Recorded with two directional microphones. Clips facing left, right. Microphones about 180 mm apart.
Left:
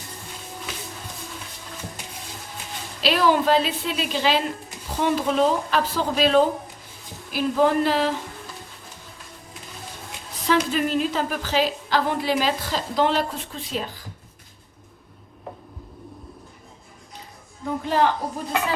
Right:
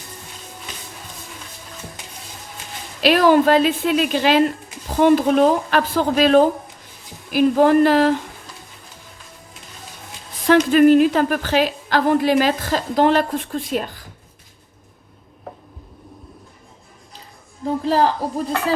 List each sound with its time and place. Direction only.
3.0 s a woman's voice: 55° right (ahead or behind)
10.4 s a woman's voice: 60° right (ahead or behind)
17.6 s a man's voice: 35° right (ahead or behind)